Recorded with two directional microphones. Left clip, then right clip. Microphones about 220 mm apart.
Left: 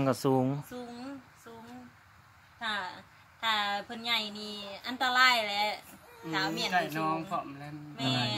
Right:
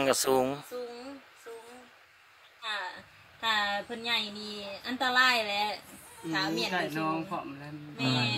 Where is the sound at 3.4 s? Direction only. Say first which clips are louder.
Right 1 dB; 15° right (ahead or behind).